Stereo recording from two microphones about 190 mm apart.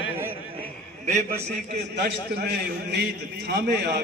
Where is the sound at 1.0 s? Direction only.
35° right (ahead or behind).